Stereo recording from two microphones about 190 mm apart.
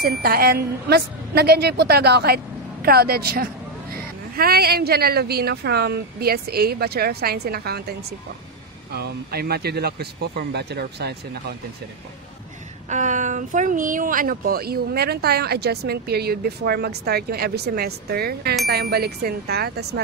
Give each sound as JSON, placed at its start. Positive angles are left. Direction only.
{"t": 0.0, "sound": "speech", "side_deg": -55}
{"t": 12.9, "sound": "speech", "side_deg": -40}